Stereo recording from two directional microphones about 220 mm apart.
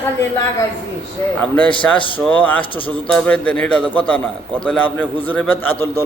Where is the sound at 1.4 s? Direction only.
5° left (ahead or behind).